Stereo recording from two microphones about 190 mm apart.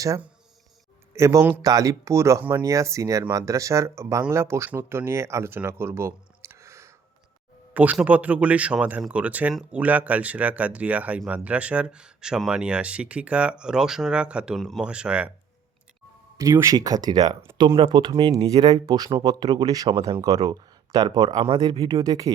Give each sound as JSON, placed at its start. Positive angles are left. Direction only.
{"t": 0.0, "sound": "speech", "side_deg": -15}
{"t": 16.4, "sound": "speech", "side_deg": -15}
{"t": 17.7, "sound": "speech", "side_deg": -25}